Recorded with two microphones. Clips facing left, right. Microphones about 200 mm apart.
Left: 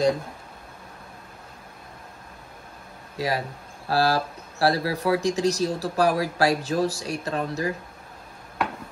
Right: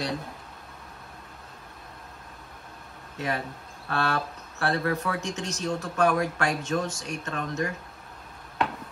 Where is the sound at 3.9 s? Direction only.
35° left (ahead or behind).